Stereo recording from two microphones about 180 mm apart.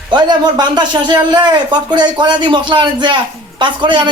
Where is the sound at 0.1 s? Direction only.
25° right (ahead or behind).